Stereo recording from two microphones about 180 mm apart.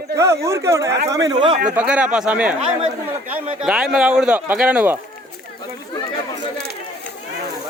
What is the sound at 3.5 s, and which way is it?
A man's voice, 5° right (ahead or behind).